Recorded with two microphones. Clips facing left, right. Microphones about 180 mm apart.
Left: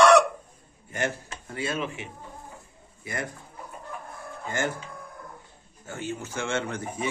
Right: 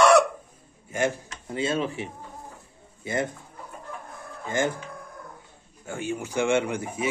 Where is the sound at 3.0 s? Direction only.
25° right (ahead or behind).